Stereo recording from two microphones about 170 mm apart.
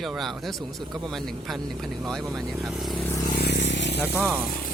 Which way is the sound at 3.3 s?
75° left (ahead or behind).